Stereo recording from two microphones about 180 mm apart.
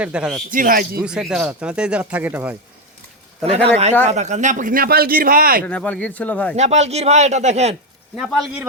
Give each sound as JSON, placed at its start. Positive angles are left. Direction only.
{"t": 0.0, "sound": "speech", "side_deg": -5}
{"t": 0.5, "sound": "a man's voice", "side_deg": -50}
{"t": 1.0, "sound": "speech", "side_deg": -5}
{"t": 4.0, "sound": "a man's voice", "side_deg": -40}
{"t": 5.6, "sound": "speech", "side_deg": 5}
{"t": 6.6, "sound": "speech", "side_deg": -40}
{"t": 8.1, "sound": "speech", "side_deg": 0}